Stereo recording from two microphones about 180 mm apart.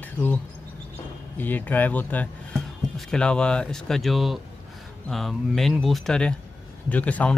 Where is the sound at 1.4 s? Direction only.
10° left (ahead or behind).